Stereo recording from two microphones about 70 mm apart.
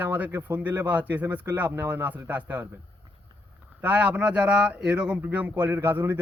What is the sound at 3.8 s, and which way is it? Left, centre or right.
A man's voice, centre.